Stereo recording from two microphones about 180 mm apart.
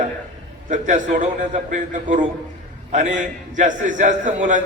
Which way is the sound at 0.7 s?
45° right (ahead or behind).